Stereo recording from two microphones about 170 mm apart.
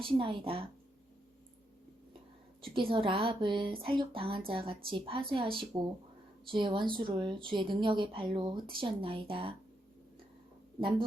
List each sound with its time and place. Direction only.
0.1 s a woman's voice: 30° right (ahead or behind)
2.6 s a woman's voice: 30° right (ahead or behind)
10.8 s speech: 30° right (ahead or behind)